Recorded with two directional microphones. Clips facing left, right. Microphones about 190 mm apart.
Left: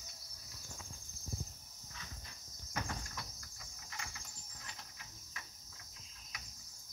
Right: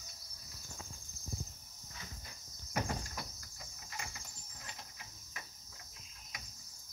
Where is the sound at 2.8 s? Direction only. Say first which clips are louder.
Right 5 dB; 25° right (ahead or behind).